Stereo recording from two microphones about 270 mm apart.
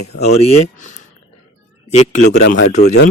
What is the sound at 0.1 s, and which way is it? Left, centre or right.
Speech, left.